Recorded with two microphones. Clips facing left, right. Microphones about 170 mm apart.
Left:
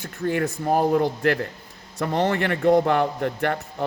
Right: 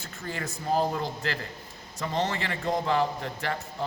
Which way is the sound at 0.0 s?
60° left (ahead or behind).